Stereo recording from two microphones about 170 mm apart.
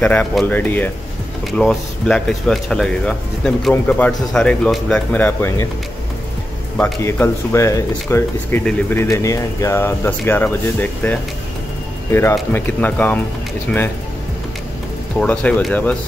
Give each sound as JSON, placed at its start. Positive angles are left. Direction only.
{"t": 0.0, "sound": "speech", "side_deg": 5}
{"t": 6.8, "sound": "speech", "side_deg": 15}
{"t": 15.1, "sound": "speech", "side_deg": 5}